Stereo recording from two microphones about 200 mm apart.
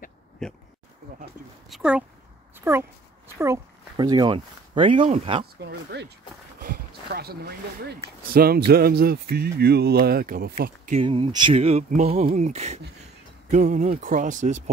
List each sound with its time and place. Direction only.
1.7 s speech: 5° right (ahead or behind)
2.5 s a sound: 10° right (ahead or behind)
3.3 s speech: 15° right (ahead or behind)
5.6 s speech: 55° right (ahead or behind)
11.0 s speech: 25° right (ahead or behind)